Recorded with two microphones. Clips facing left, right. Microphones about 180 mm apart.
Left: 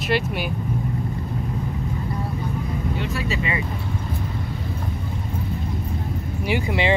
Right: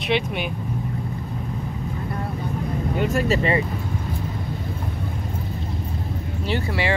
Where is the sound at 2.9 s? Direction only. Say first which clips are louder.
Right 9 dB; 45° right (ahead or behind).